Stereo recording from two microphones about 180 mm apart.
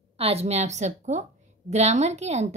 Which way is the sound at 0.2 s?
35° right (ahead or behind).